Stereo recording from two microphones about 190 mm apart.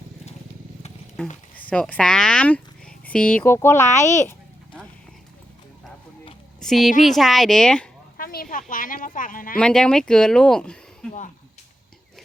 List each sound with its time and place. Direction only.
1.5 s speech: 5° left (ahead or behind)
4.2 s a sound: 10° left (ahead or behind)
6.6 s a woman's voice: centre (ahead or behind)
8.2 s a sound: 50° left (ahead or behind)
8.7 s a woman's voice: 45° left (ahead or behind)
9.6 s speech: 5° left (ahead or behind)